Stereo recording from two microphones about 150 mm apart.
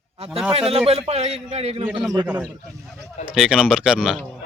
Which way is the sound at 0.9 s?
40° right (ahead or behind).